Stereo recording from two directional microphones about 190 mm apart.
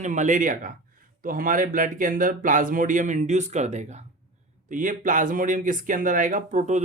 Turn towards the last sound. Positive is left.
turn(degrees=-40)  # may be behind; listen again after turning